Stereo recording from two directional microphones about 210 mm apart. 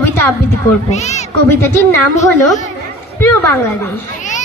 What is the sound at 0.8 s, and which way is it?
Speech, 30° left (ahead or behind).